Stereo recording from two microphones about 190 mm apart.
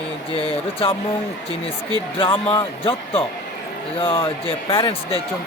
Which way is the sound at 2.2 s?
25° left (ahead or behind).